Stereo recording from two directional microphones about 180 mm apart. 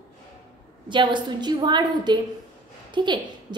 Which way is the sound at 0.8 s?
25° right (ahead or behind).